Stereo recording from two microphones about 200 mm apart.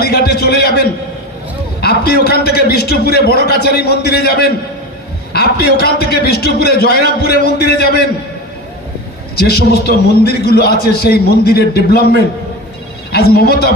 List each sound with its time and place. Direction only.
0.0 s a man's voice: 50° left (ahead or behind)
9.3 s a man's voice: 50° left (ahead or behind)